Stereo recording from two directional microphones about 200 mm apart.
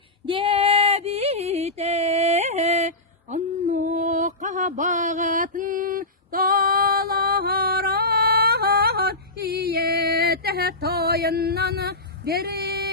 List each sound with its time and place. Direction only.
0.3 s female singing: 25° right (ahead or behind)
3.3 s mantra: 40° right (ahead or behind)